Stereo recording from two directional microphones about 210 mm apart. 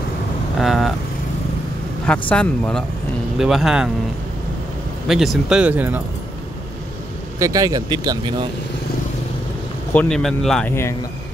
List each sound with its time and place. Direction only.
0.6 s vehicle: centre (ahead or behind)
2.0 s speech: 5° left (ahead or behind)
5.0 s speech: centre (ahead or behind)
7.3 s speech: 15° right (ahead or behind)
9.9 s speech: 5° left (ahead or behind)